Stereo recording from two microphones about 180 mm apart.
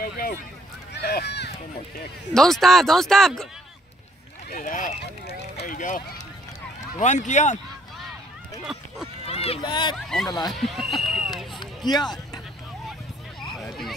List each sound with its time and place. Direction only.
0.9 s speech: 65° left (ahead or behind)
2.3 s speech: centre (ahead or behind)
4.5 s speech: 50° left (ahead or behind)
9.2 s run: 35° left (ahead or behind)
9.6 s speech: 25° left (ahead or behind)
9.9 s speech: centre (ahead or behind)
11.6 s speech: 25° left (ahead or behind)
13.5 s hubbub: centre (ahead or behind)